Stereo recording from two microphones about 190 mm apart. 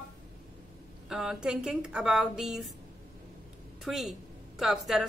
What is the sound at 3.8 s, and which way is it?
Speech, centre (ahead or behind).